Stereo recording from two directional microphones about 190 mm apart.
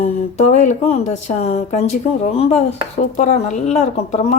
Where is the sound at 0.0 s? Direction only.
40° left (ahead or behind).